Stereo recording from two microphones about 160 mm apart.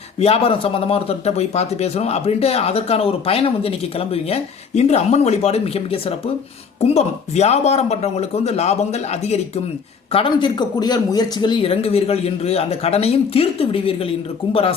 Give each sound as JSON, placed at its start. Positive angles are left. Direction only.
{"t": 0.2, "sound": "speech", "side_deg": 35}